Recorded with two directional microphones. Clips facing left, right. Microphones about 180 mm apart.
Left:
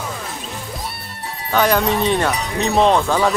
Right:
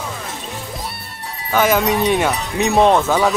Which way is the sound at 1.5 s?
Centre (ahead or behind).